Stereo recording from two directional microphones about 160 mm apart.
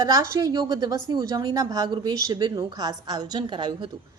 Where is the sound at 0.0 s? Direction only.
25° right (ahead or behind).